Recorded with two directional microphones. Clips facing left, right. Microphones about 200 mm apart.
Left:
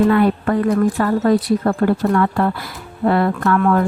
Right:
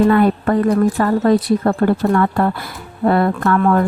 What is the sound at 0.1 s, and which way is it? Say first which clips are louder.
Speech: right 1 dB; 40° right (ahead or behind).